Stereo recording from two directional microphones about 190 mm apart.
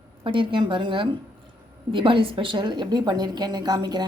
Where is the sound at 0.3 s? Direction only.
25° right (ahead or behind).